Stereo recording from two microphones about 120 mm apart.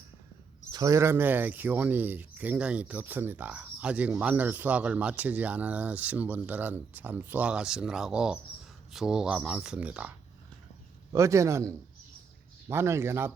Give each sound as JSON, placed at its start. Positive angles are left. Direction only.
{"t": 0.7, "sound": "speech", "side_deg": -30}
{"t": 11.1, "sound": "speech", "side_deg": -25}